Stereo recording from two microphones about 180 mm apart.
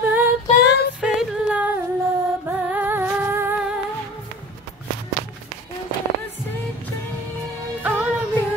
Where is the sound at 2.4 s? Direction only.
10° right (ahead or behind).